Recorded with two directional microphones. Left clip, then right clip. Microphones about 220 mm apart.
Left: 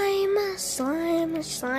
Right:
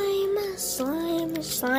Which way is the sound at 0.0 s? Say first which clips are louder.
Left 2 dB; 35° left (ahead or behind).